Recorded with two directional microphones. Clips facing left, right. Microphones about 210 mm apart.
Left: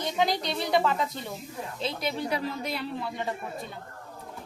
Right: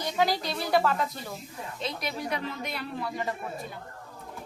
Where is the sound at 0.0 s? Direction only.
20° left (ahead or behind).